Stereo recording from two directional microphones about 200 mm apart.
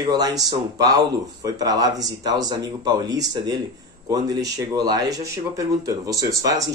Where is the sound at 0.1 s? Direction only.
20° right (ahead or behind).